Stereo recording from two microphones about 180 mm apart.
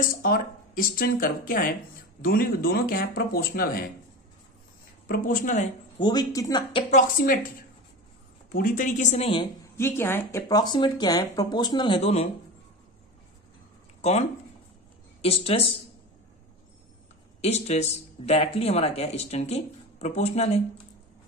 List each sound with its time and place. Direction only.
0.1 s speech: 50° left (ahead or behind)
5.0 s speech: 50° left (ahead or behind)
5.9 s speech: 25° left (ahead or behind)
6.9 s speech: 45° left (ahead or behind)
8.5 s speech: 50° left (ahead or behind); by 9.5 s 30° left (ahead or behind)
9.8 s speech: 15° left (ahead or behind); by 12.3 s 35° left (ahead or behind)
14.0 s speech: 35° left (ahead or behind)
15.2 s speech: 30° left (ahead or behind)
17.4 s speech: 35° left (ahead or behind)